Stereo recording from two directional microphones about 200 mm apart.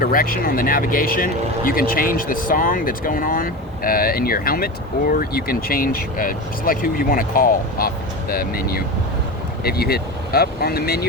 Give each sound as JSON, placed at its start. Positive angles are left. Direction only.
{"t": 0.0, "sound": "speech", "side_deg": 45}